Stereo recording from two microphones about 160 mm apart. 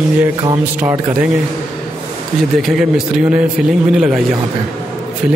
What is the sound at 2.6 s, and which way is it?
A man's voice, centre (ahead or behind).